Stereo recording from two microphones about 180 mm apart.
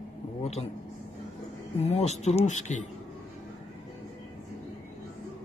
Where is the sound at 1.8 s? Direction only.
40° left (ahead or behind).